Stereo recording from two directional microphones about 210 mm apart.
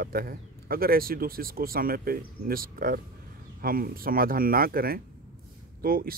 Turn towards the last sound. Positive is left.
turn(degrees=-45)  # may be behind; listen again after turning